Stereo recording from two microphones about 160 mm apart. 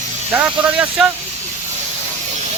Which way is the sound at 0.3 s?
10° right (ahead or behind).